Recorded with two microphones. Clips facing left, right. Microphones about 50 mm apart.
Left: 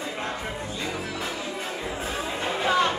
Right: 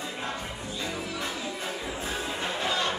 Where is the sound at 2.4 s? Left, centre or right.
Left.